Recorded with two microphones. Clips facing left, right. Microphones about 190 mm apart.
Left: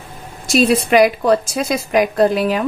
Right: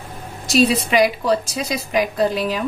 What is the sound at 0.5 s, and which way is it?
A woman's voice, 50° left (ahead or behind).